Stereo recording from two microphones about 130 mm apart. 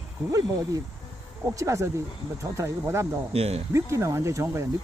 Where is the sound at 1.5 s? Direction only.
25° right (ahead or behind).